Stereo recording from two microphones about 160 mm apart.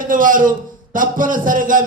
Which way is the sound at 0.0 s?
60° right (ahead or behind).